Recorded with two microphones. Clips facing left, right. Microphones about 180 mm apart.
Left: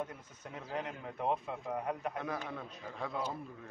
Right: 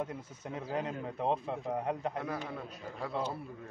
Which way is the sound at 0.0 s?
25° right (ahead or behind).